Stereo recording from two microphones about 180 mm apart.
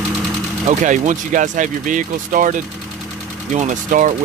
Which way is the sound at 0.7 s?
45° right (ahead or behind).